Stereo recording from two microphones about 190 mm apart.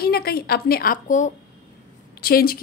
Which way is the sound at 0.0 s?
55° left (ahead or behind).